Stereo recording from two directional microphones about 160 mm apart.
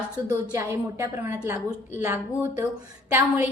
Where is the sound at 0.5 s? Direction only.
20° right (ahead or behind).